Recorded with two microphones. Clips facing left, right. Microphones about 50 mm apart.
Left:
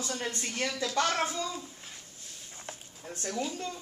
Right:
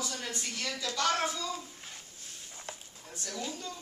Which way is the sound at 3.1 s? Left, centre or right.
Left.